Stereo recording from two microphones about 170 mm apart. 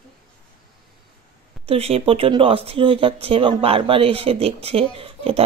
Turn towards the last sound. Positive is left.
turn(degrees=-35)  # may be behind; listen again after turning